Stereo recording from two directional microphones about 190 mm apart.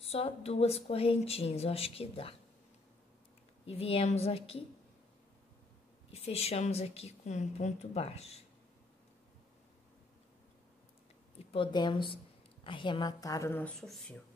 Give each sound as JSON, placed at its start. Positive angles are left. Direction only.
{"t": 0.0, "sound": "a woman's voice", "side_deg": 30}
{"t": 3.6, "sound": "a woman's voice", "side_deg": 30}
{"t": 6.0, "sound": "a woman's voice", "side_deg": 30}
{"t": 11.3, "sound": "speech", "side_deg": 25}